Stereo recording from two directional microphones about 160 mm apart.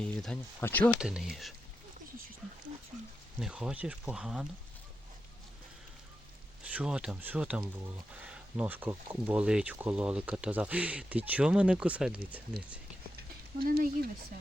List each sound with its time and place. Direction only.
0.0 s speech: 5° left (ahead or behind)
0.9 s speech: 5° right (ahead or behind)
3.4 s speech: 5° right (ahead or behind)
6.7 s speech: 5° right (ahead or behind)
13.7 s speech: 65° right (ahead or behind)